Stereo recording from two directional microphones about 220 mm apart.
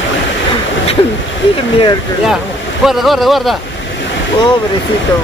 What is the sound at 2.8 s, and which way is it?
Speech, centre (ahead or behind).